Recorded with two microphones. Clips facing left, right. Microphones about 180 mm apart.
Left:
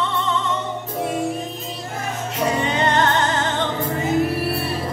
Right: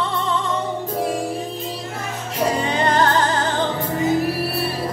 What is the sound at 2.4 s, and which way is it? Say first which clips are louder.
Music: right 1 dB; 30° right (ahead or behind).